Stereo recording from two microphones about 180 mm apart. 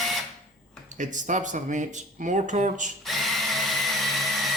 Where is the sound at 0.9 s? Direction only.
45° right (ahead or behind).